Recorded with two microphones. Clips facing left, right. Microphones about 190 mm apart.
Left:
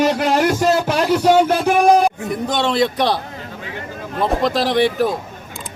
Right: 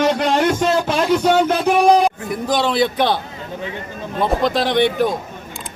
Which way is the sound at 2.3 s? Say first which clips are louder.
Even; centre (ahead or behind).